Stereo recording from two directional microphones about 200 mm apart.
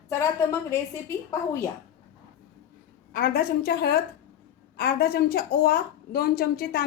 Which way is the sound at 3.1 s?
45° left (ahead or behind).